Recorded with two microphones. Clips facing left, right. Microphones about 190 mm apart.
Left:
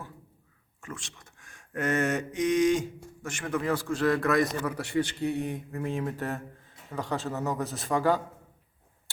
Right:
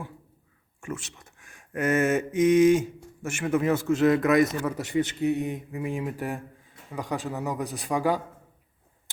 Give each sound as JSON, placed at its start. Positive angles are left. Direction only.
{"t": 0.8, "sound": "speech", "side_deg": -10}
{"t": 3.4, "sound": "a man's voice", "side_deg": -25}
{"t": 9.1, "sound": "a sound", "side_deg": -20}